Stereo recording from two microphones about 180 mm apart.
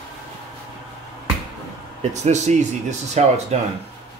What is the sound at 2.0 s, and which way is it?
Speech, 40° right (ahead or behind).